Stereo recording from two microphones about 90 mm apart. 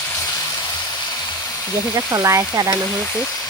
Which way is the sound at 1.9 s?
30° right (ahead or behind).